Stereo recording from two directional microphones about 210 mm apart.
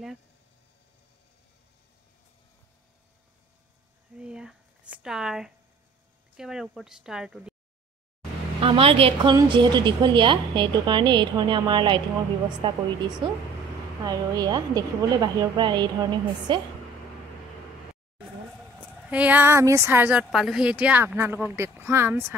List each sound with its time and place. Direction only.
4.2 s a sound: 5° right (ahead or behind)
5.0 s speech: centre (ahead or behind)
8.5 s a woman's voice: 25° right (ahead or behind)
19.0 s speech: 5° right (ahead or behind)